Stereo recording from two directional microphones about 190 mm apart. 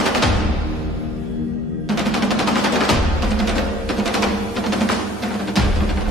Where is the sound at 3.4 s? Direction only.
Centre (ahead or behind).